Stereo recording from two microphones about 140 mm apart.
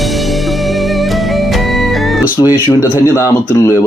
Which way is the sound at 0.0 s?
Centre (ahead or behind).